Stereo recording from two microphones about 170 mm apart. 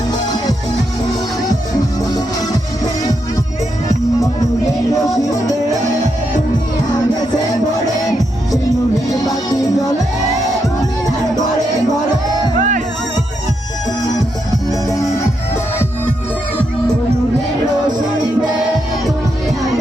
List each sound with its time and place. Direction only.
2.0 s music: 20° left (ahead or behind)
9.0 s music: 20° left (ahead or behind)
12.5 s music: 50° right (ahead or behind)
14.7 s music: 20° left (ahead or behind)